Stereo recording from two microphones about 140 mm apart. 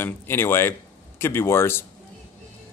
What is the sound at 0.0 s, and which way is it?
Speech, 15° left (ahead or behind).